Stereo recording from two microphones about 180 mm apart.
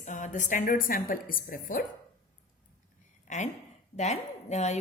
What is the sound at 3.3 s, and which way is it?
A woman's voice, 40° left (ahead or behind).